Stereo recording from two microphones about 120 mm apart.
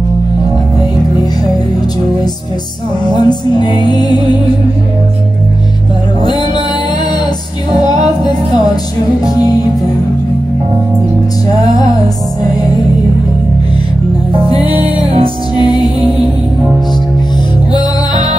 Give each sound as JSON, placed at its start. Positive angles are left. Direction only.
{"t": 3.2, "sound": "music", "side_deg": 40}
{"t": 6.2, "sound": "music", "side_deg": 40}
{"t": 7.7, "sound": "music", "side_deg": 35}
{"t": 15.0, "sound": "music", "side_deg": -50}
{"t": 17.7, "sound": "music", "side_deg": 35}